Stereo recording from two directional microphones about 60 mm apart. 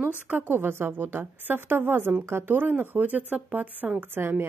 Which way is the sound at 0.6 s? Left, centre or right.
Right.